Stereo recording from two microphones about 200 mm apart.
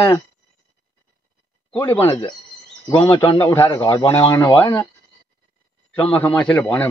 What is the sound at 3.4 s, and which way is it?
A man's voice, 15° left (ahead or behind).